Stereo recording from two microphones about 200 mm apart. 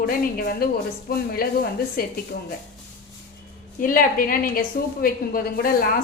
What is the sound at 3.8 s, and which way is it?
Chopping, 45° left (ahead or behind).